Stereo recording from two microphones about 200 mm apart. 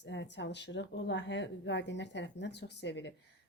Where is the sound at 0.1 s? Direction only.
60° left (ahead or behind).